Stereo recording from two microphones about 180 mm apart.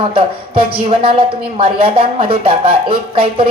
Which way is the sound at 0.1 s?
30° right (ahead or behind).